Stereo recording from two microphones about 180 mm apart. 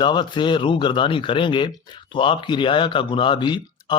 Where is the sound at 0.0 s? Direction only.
25° left (ahead or behind).